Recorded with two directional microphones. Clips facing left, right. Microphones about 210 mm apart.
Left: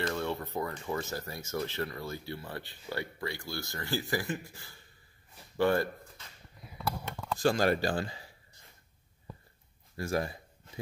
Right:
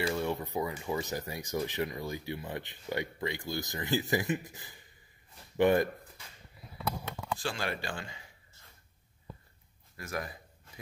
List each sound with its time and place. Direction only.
0.0 s speech: 10° right (ahead or behind)
7.3 s speech: 40° left (ahead or behind)
9.9 s a man's voice: 30° left (ahead or behind)